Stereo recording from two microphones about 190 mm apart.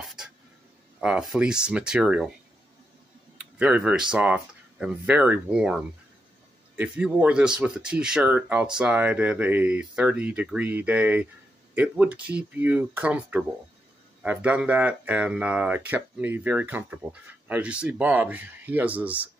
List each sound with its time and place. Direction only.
0.0 s a sound: centre (ahead or behind)
1.0 s speech: 5° right (ahead or behind)
3.3 s speech: 5° right (ahead or behind)